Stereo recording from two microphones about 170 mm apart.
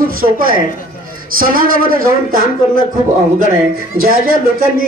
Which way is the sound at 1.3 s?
55° right (ahead or behind).